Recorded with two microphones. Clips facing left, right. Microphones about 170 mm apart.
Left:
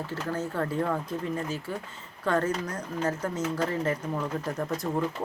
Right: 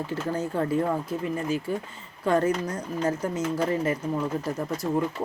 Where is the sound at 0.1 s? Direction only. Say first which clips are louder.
Right 3 dB; 15° right (ahead or behind).